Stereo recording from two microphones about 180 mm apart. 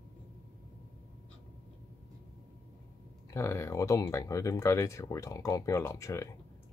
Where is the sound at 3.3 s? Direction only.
15° left (ahead or behind).